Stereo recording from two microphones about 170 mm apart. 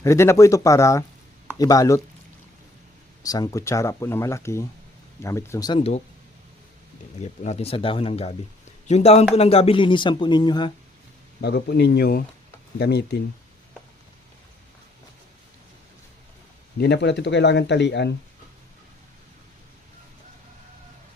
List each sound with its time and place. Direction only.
0.0 s speech: 15° left (ahead or behind)
3.2 s speech: 20° left (ahead or behind)
7.2 s speech: 40° left (ahead or behind); by 10.7 s 25° left (ahead or behind)
11.3 s speech: 70° left (ahead or behind)
16.8 s speech: 90° left